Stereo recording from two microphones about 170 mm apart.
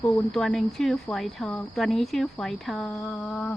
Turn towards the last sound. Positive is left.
turn(degrees=10)  # may be behind; listen again after turning